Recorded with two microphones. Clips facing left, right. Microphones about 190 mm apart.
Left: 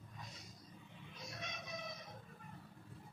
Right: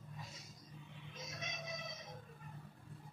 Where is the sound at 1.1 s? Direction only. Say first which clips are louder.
Right 1 dB; 20° right (ahead or behind).